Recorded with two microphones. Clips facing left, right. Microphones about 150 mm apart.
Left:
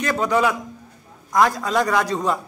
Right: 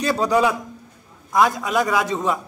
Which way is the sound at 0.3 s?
15° right (ahead or behind).